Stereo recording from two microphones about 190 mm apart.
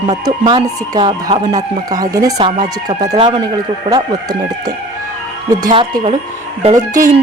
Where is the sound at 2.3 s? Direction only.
35° right (ahead or behind).